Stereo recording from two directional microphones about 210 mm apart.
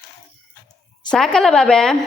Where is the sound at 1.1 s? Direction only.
5° left (ahead or behind).